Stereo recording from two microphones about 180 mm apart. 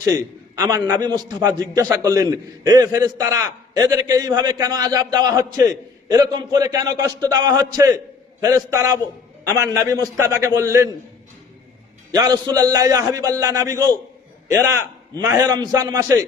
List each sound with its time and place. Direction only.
0.0 s a man's voice: 20° right (ahead or behind)
12.1 s a man's voice: 20° right (ahead or behind)